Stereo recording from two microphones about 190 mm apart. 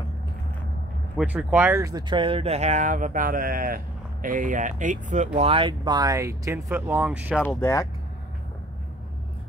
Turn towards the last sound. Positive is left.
turn(degrees=15)  # may be behind; listen again after turning